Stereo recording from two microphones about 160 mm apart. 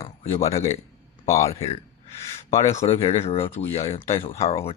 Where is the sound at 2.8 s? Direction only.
35° left (ahead or behind).